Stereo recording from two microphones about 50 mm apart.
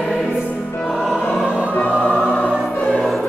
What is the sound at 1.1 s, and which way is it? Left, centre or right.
Music, left.